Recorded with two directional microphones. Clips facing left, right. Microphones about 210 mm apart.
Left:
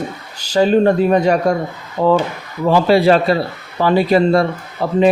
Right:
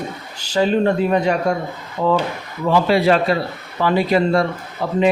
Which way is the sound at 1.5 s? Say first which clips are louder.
Left 3 dB; 40° left (ahead or behind).